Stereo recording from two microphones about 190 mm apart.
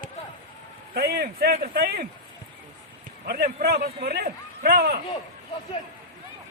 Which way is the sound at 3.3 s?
55° right (ahead or behind).